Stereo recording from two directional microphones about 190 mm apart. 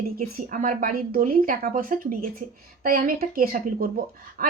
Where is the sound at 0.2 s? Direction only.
45° right (ahead or behind).